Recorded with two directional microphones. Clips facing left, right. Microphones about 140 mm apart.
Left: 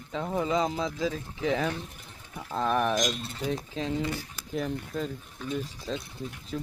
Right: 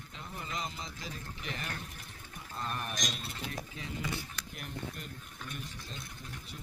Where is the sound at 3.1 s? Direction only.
Centre (ahead or behind).